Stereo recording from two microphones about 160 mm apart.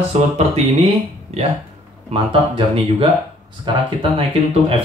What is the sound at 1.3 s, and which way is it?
Speech, 40° right (ahead or behind).